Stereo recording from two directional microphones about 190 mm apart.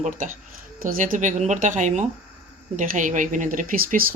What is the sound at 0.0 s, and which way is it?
Speech, 40° right (ahead or behind).